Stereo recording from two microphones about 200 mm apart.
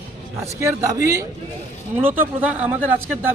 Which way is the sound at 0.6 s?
15° right (ahead or behind).